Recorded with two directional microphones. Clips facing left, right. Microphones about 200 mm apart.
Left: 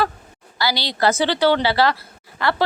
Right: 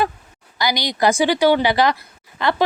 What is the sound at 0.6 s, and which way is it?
A woman's voice, 15° right (ahead or behind).